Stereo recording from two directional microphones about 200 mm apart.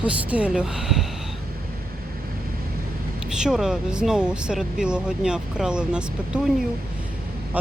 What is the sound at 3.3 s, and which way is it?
Speech, 5° right (ahead or behind).